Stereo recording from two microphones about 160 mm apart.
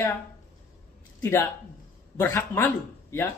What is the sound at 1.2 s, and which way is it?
A man's voice, 15° left (ahead or behind).